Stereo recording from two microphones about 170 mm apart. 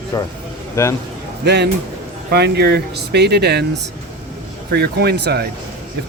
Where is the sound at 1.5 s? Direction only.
80° right.